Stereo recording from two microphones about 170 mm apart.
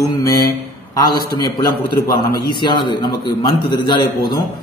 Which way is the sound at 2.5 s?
25° left (ahead or behind).